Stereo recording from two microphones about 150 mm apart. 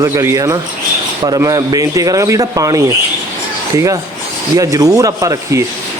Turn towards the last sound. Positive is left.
turn(degrees=-20)  # may be behind; listen again after turning